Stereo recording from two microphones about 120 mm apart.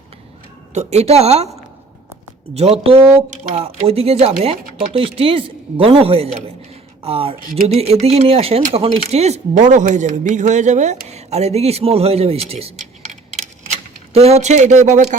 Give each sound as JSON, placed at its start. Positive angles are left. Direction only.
{"t": 0.7, "sound": "speech", "side_deg": -70}
{"t": 2.6, "sound": "a man's voice", "side_deg": -55}
{"t": 14.1, "sound": "speech", "side_deg": -60}